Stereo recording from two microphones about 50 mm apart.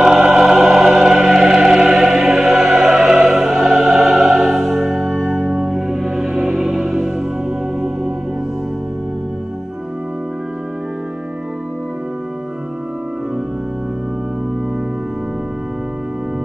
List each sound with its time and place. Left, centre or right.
0.0 s music: centre
2.4 s music: right
2.8 s music: centre
4.6 s music: right
5.6 s music: centre